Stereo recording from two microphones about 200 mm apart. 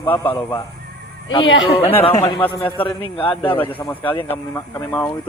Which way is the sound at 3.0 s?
25° left (ahead or behind).